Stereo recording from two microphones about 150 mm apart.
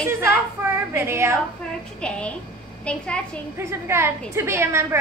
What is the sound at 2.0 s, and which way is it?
A woman's voice, 5° left (ahead or behind).